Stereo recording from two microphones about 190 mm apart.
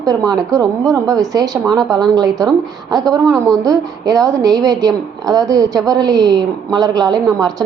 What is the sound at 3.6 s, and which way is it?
A woman's voice, 20° right (ahead or behind).